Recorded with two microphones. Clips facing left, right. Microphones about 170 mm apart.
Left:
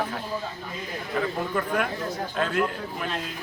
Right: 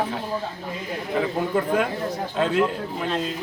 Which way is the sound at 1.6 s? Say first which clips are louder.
Right 5 dB; 20° right (ahead or behind).